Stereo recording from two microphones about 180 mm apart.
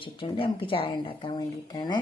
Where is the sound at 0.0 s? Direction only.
30° left (ahead or behind).